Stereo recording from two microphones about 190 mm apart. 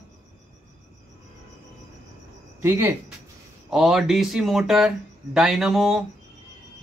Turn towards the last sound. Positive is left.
turn(degrees=0)  # may be behind; listen again after turning